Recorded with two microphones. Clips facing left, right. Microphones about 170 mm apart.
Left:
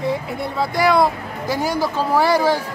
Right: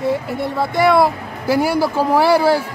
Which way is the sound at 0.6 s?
Centre (ahead or behind).